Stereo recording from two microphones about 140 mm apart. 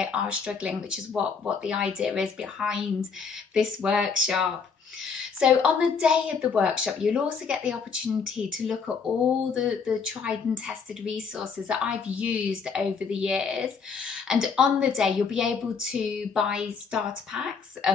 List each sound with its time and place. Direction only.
0.0 s a woman's voice: 5° right (ahead or behind)